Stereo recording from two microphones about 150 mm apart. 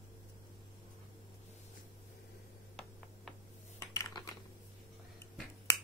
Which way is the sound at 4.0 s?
25° left (ahead or behind).